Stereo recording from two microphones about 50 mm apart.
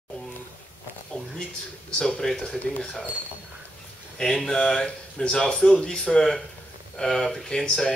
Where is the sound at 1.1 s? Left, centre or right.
Centre.